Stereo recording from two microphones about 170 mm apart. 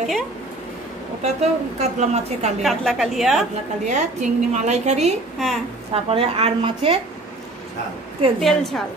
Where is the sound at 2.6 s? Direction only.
Centre (ahead or behind).